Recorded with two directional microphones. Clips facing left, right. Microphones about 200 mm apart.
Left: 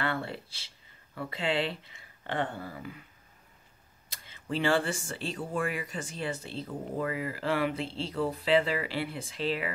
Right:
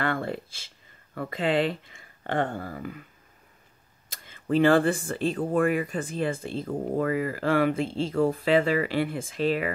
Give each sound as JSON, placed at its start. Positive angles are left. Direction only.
{"t": 0.0, "sound": "speech", "side_deg": -50}
{"t": 4.1, "sound": "speech", "side_deg": -50}